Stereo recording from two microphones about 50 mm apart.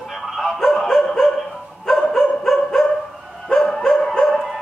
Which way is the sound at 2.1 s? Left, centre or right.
Centre.